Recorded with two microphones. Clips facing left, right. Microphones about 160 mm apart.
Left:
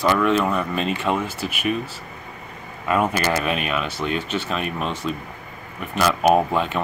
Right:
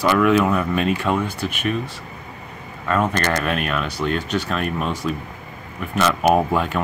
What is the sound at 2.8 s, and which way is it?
Speech, 10° left (ahead or behind).